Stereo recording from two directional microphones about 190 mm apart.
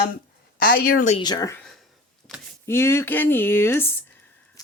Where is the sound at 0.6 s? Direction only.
50° left (ahead or behind).